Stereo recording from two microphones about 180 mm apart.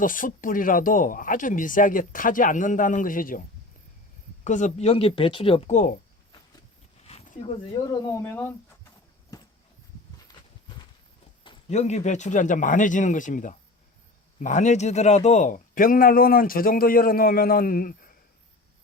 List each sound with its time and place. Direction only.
0.0 s speech: 50° left (ahead or behind)
4.4 s speech: 40° left (ahead or behind)
7.1 s a sound: 40° left (ahead or behind)
7.7 s speech: 20° left (ahead or behind)
9.3 s a sound: 20° left (ahead or behind)
11.7 s speech: 40° left (ahead or behind)